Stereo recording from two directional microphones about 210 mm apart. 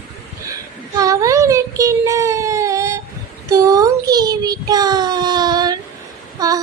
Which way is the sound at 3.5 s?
15° right (ahead or behind).